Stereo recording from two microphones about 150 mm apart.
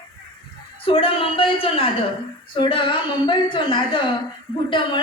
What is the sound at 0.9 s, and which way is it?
Speech, 40° left (ahead or behind).